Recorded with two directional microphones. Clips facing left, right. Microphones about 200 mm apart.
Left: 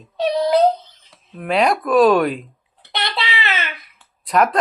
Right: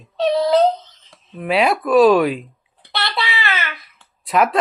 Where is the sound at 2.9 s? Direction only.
20° left (ahead or behind).